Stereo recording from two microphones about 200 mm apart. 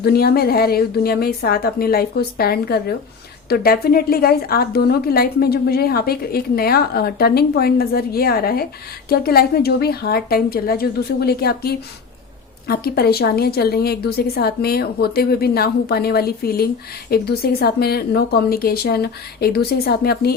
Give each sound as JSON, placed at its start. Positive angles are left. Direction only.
{"t": 0.0, "sound": "a woman's voice", "side_deg": 50}